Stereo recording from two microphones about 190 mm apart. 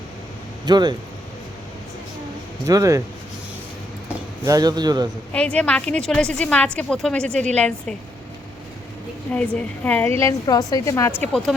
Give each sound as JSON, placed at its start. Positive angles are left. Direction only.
{"t": 0.6, "sound": "a man's voice", "side_deg": -20}
{"t": 2.6, "sound": "speech", "side_deg": -15}
{"t": 4.4, "sound": "a man's voice", "side_deg": -20}
{"t": 5.3, "sound": "a woman's voice", "side_deg": 5}
{"t": 9.3, "sound": "a woman's voice", "side_deg": 5}
{"t": 10.2, "sound": "a woman's voice", "side_deg": 20}
{"t": 11.2, "sound": "a woman's voice", "side_deg": 5}